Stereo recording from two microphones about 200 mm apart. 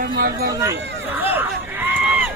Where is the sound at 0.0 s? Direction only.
50° right (ahead or behind).